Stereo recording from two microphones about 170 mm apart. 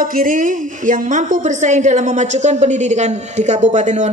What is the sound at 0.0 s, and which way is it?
A woman's voice, 55° right (ahead or behind).